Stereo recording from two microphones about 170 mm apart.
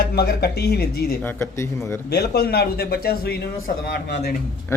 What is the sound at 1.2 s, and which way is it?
Speech, 15° left (ahead or behind).